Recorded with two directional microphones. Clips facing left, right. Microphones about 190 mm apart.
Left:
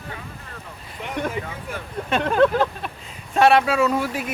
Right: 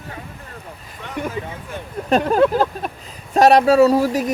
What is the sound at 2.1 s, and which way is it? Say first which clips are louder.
Speech: right 6 dB; 40° right (ahead or behind).